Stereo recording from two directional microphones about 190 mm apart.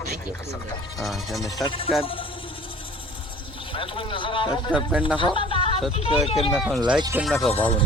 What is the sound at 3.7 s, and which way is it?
Speech, 25° left (ahead or behind).